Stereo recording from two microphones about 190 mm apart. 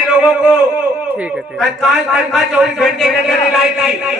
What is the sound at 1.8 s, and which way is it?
A man's voice, centre (ahead or behind).